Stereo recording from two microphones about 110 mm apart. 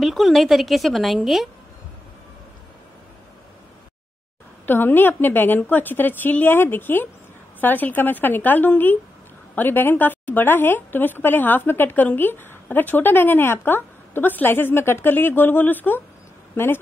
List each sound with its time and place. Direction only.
0.0 s a woman's voice: centre (ahead or behind)
4.6 s speech: 20° left (ahead or behind)